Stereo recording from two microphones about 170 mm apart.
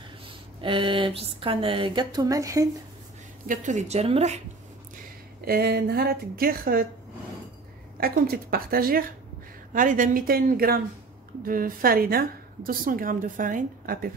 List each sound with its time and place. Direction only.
0.6 s speech: 30° right (ahead or behind)
3.4 s speech: 45° right (ahead or behind)
5.4 s a woman's voice: 65° right (ahead or behind)
8.0 s a woman's voice: 60° right (ahead or behind)